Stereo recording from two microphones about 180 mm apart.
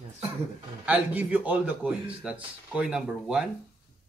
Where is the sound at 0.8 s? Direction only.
5° right (ahead or behind).